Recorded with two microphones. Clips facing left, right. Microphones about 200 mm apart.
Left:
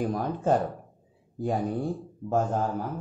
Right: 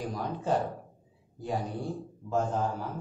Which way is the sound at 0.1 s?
50° left (ahead or behind).